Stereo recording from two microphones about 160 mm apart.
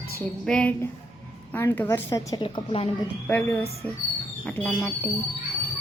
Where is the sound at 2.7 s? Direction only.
40° left (ahead or behind).